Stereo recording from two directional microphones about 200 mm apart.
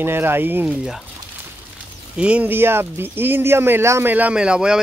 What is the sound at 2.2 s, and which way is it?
Speech, 5° right (ahead or behind).